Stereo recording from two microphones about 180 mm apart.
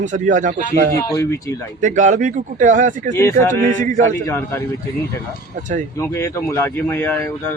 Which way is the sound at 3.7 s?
45° right (ahead or behind).